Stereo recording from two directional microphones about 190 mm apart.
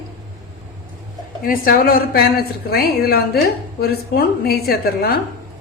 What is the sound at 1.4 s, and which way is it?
A woman's voice, 50° left (ahead or behind).